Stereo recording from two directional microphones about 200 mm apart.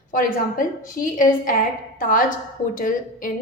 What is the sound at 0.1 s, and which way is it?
A woman's voice, 40° left (ahead or behind).